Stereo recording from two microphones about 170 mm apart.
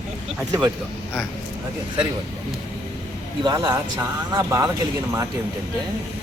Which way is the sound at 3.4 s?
25° right (ahead or behind).